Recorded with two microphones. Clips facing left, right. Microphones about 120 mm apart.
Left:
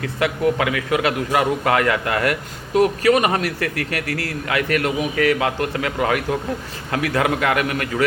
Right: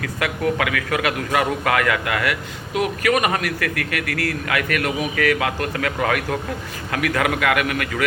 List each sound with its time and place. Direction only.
0.0 s a man's voice: 25° left (ahead or behind)